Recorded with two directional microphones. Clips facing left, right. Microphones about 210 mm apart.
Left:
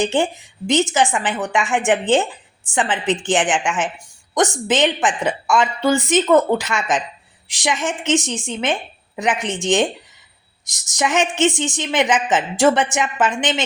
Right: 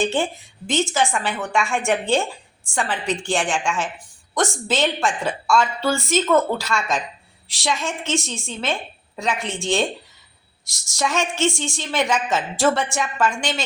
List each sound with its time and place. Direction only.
0.0 s a woman's voice: 15° left (ahead or behind)